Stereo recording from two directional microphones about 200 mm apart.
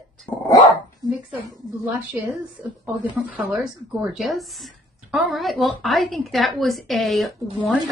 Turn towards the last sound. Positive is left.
turn(degrees=0)  # may be behind; listen again after turning